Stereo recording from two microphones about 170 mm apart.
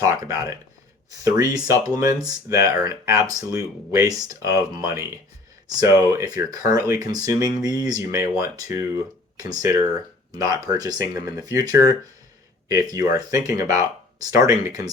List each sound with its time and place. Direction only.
0.0 s speech: 20° right (ahead or behind)